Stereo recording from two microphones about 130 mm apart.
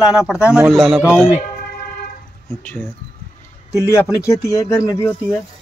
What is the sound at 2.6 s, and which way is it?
A man's voice, 15° left (ahead or behind).